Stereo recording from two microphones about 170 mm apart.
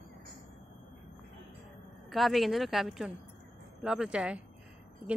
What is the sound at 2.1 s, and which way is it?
A woman's voice, centre (ahead or behind).